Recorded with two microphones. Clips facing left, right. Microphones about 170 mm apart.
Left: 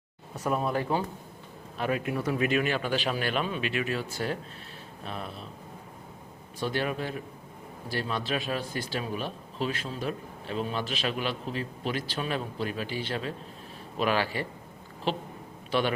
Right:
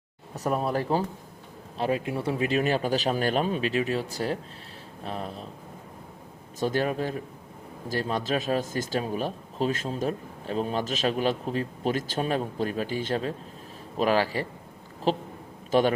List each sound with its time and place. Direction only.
0.3 s speech: 40° right (ahead or behind)
6.6 s a man's voice: 40° right (ahead or behind)